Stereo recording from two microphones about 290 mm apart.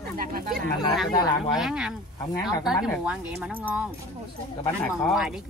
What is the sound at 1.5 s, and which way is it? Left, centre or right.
Speech, centre.